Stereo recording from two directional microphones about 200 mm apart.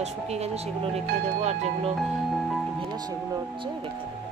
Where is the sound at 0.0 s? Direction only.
30° right (ahead or behind).